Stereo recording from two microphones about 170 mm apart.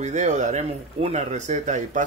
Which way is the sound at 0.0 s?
45° right (ahead or behind).